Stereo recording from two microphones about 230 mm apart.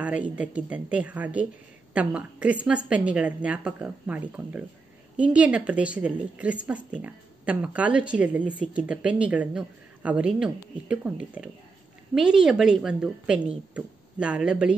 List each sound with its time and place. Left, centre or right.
0.0 s a woman's voice: centre